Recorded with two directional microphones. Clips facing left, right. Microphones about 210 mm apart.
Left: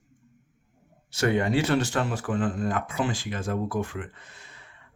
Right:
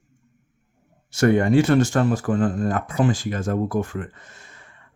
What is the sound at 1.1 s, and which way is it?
Speech, 50° right (ahead or behind).